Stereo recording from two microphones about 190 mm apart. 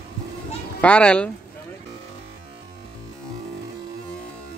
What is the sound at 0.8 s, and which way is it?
Speech, 5° left (ahead or behind).